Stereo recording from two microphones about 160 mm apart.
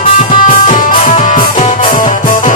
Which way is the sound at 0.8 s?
55° left (ahead or behind).